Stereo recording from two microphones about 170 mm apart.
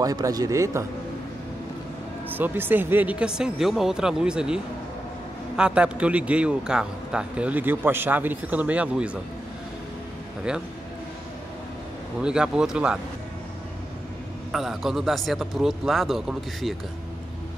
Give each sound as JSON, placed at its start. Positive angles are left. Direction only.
{"t": 0.0, "sound": "a man's voice", "side_deg": -20}
{"t": 2.3, "sound": "a man's voice", "side_deg": -10}
{"t": 5.6, "sound": "a man's voice", "side_deg": -5}
{"t": 12.2, "sound": "a man's voice", "side_deg": -5}
{"t": 14.5, "sound": "a man's voice", "side_deg": 0}